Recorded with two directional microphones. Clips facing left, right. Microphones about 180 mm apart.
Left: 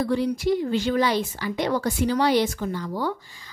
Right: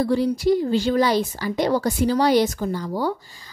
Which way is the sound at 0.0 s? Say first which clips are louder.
Right 3 dB; 35° right (ahead or behind).